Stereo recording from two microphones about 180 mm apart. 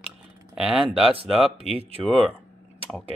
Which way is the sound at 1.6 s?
35° right (ahead or behind).